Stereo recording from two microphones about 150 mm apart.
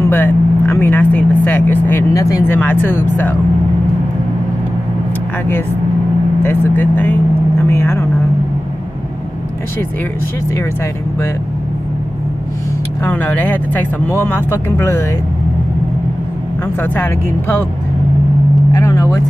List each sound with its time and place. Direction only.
0.0 s speech: 15° left (ahead or behind)
6.4 s speech: 15° left (ahead or behind)
13.0 s speech: 10° left (ahead or behind)
16.9 s speech: 15° left (ahead or behind)
18.7 s vehicle: 20° left (ahead or behind)